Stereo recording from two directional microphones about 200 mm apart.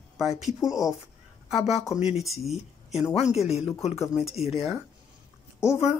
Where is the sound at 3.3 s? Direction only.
30° left (ahead or behind).